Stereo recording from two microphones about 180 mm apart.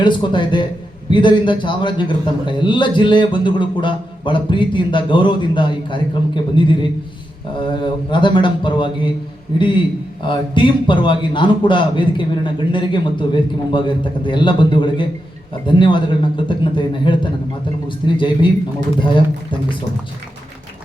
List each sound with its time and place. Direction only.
0.0 s a man's voice: 25° left (ahead or behind)